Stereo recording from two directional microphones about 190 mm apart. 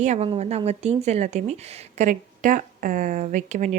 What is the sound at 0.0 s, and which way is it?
Speech, 40° right (ahead or behind).